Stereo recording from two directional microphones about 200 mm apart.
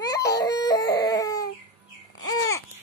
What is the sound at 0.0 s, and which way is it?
Crying, 15° left (ahead or behind).